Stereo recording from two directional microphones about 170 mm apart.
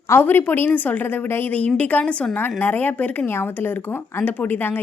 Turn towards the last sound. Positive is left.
turn(degrees=10)  # may be behind; listen again after turning